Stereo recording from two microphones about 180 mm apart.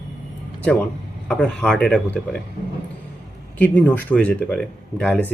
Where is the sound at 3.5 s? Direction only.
10° left (ahead or behind).